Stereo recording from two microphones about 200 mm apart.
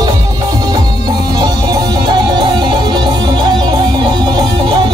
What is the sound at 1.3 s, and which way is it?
Music, 20° right (ahead or behind).